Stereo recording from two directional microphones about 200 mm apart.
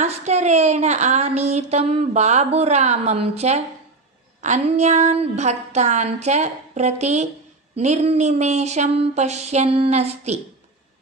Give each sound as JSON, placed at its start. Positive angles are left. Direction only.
{"t": 0.0, "sound": "a woman's voice", "side_deg": -35}